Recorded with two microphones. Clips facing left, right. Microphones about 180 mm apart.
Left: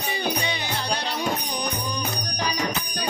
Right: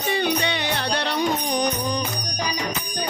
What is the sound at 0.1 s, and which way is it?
Music, 65° right (ahead or behind).